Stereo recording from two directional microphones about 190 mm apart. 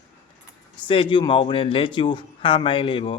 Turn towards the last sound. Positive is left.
turn(degrees=25)  # may be behind; listen again after turning